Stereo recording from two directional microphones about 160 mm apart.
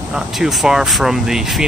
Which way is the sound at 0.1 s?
Centre (ahead or behind).